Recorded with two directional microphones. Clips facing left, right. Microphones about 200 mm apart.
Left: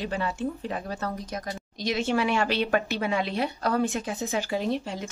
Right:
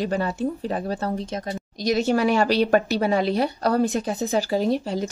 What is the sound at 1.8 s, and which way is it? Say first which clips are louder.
Speech: right 5 dB; 40° right (ahead or behind).